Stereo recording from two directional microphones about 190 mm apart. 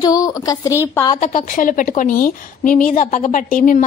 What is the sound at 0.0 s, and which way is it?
Speech, 20° left (ahead or behind).